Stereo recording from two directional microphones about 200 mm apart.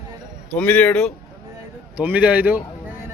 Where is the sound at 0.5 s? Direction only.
10° left (ahead or behind).